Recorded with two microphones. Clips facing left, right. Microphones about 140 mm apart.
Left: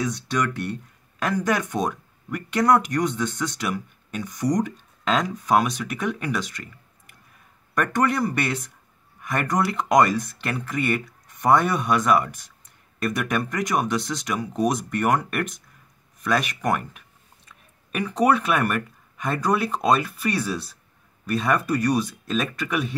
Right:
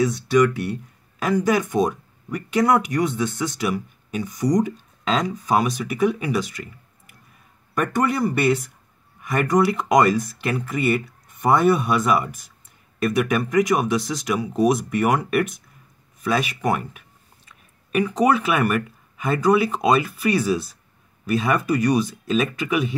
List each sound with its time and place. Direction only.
0.0 s speech: 5° right (ahead or behind)